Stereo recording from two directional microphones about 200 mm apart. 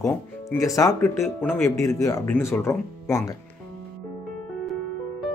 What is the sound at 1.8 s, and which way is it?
Speech, 15° left (ahead or behind).